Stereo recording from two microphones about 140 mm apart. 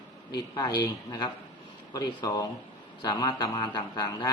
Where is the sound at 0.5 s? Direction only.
30° left (ahead or behind).